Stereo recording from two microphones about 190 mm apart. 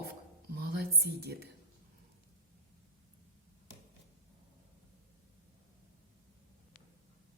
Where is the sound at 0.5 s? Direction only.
50° right (ahead or behind).